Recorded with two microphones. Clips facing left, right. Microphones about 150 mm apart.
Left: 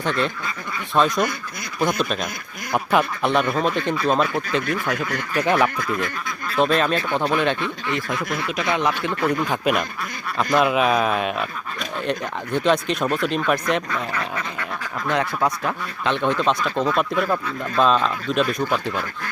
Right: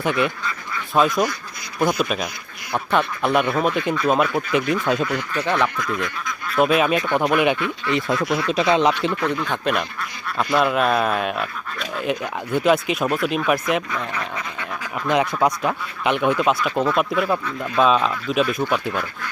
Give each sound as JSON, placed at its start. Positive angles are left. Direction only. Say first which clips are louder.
{"t": 0.0, "sound": "speech", "louder": "right 2 dB", "side_deg": -10}
{"t": 3.3, "sound": "speech", "louder": "right 2 dB", "side_deg": -10}
{"t": 5.3, "sound": "speech", "louder": "left 5 dB", "side_deg": 15}
{"t": 6.6, "sound": "speech", "louder": "right 2 dB", "side_deg": -10}
{"t": 7.9, "sound": "speech", "louder": "right 7 dB", "side_deg": -25}
{"t": 9.2, "sound": "speech", "louder": "left 6 dB", "side_deg": 10}
{"t": 14.3, "sound": "speech", "louder": "left 1 dB", "side_deg": -15}